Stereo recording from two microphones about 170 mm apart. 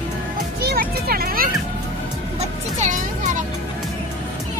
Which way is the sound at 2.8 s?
50° right (ahead or behind).